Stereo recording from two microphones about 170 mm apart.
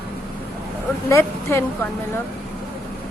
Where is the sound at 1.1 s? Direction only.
15° left (ahead or behind).